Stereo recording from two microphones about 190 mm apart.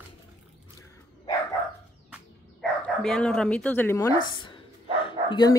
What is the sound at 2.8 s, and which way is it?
Speech, 5° left (ahead or behind).